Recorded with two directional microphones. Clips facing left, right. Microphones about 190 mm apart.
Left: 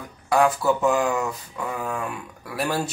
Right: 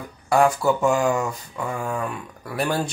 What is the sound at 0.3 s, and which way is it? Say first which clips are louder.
Speech: right 1 dB; centre (ahead or behind).